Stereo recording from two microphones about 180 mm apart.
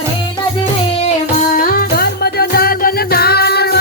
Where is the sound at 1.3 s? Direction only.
45° left (ahead or behind).